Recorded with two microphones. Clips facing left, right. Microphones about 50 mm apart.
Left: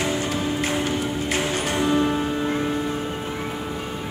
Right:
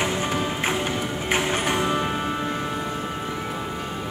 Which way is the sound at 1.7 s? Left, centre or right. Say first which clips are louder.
Left 3 dB; centre.